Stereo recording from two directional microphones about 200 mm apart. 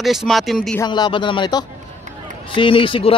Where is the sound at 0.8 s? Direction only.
20° left (ahead or behind).